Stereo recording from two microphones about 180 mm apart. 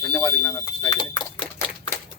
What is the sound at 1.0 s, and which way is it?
Speech, 25° left (ahead or behind).